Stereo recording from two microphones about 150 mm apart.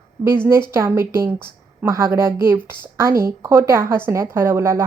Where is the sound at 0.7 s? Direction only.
15° right (ahead or behind).